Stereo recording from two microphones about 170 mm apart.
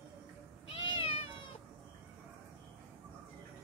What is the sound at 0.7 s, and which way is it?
Cat, 35° left (ahead or behind).